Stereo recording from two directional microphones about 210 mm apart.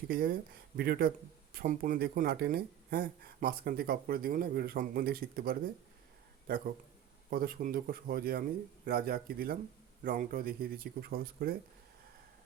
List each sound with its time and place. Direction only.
0.1 s speech: 45° right (ahead or behind)
7.3 s speech: 45° right (ahead or behind)